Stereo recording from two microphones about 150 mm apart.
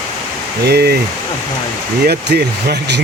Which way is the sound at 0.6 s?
90° right.